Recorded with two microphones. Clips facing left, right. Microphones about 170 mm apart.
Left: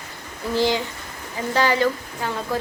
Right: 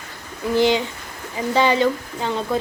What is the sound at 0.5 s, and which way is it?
Speech, 20° right (ahead or behind).